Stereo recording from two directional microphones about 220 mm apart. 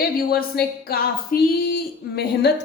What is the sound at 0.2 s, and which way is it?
Speech, 45° left (ahead or behind).